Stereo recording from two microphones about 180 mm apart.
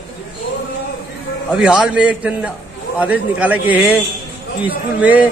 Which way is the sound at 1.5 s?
5° right (ahead or behind).